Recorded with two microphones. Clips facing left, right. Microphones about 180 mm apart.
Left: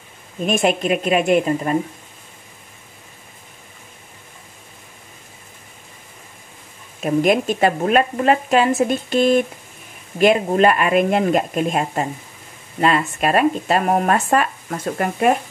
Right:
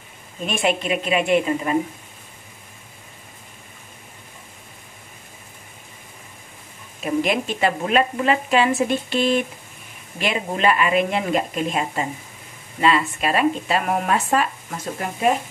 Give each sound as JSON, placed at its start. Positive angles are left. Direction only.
{"t": 0.5, "sound": "speech", "side_deg": 45}
{"t": 7.2, "sound": "speech", "side_deg": 45}